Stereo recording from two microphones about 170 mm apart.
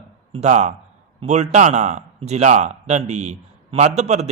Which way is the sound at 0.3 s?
45° right (ahead or behind).